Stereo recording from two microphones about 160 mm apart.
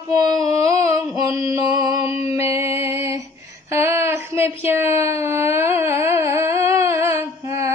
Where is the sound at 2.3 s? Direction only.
15° right (ahead or behind).